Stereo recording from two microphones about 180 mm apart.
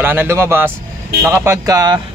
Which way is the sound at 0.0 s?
10° right (ahead or behind).